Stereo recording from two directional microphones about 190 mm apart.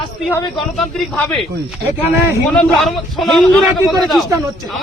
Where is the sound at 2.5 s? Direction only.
Centre (ahead or behind).